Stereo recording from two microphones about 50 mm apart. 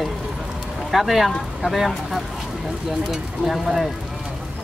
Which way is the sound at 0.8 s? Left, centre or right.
Centre.